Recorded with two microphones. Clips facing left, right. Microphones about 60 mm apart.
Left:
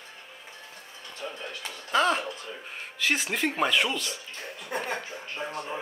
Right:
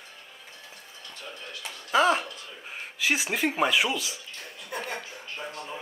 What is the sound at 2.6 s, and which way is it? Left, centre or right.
Speech, centre.